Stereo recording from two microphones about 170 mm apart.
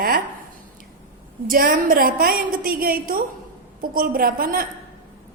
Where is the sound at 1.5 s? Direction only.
60° right (ahead or behind).